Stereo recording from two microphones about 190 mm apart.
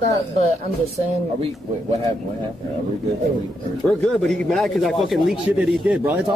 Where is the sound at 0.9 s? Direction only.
35° right (ahead or behind).